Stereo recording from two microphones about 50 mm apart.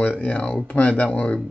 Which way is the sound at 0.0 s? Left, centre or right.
Left.